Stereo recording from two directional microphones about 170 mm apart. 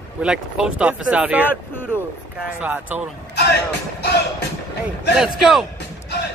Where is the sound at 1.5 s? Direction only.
10° left (ahead or behind).